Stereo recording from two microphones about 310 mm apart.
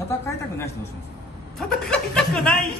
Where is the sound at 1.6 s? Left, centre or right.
Centre.